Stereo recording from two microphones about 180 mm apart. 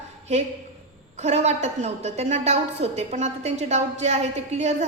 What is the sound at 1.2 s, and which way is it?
A woman's voice, 40° right (ahead or behind).